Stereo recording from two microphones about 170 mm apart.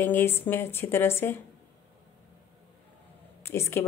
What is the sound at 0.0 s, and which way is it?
A woman's voice, 10° left (ahead or behind).